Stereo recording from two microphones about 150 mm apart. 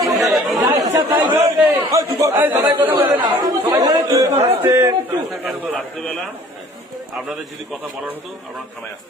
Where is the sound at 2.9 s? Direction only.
25° right (ahead or behind).